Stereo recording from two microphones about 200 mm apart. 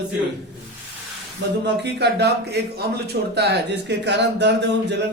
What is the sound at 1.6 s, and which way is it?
A man's voice, 60° right (ahead or behind).